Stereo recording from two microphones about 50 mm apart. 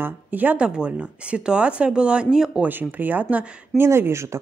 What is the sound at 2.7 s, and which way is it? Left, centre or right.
Speech, right.